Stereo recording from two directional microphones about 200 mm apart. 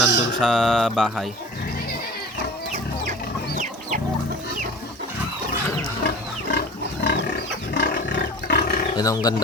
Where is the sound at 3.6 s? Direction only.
40° right (ahead or behind).